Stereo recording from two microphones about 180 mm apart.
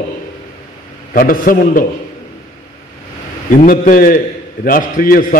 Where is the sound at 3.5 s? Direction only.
50° left (ahead or behind).